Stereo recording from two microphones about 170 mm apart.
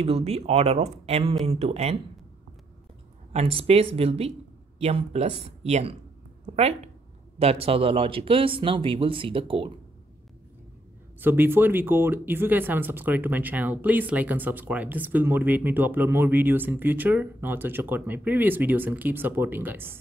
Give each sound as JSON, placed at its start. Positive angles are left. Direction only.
{"t": 0.0, "sound": "speech", "side_deg": -35}
{"t": 3.3, "sound": "speech", "side_deg": -35}
{"t": 6.4, "sound": "a sound", "side_deg": -40}
{"t": 7.3, "sound": "speech", "side_deg": -35}
{"t": 11.1, "sound": "speech", "side_deg": -10}